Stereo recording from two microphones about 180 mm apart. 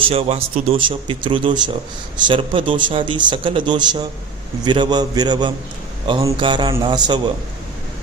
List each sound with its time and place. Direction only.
0.0 s a man's voice: 35° right (ahead or behind)